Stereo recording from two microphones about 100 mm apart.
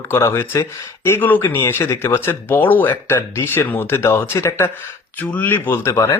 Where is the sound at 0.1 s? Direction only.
25° left (ahead or behind).